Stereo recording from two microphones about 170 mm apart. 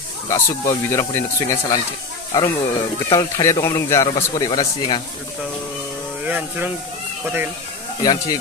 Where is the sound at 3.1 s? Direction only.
20° left (ahead or behind).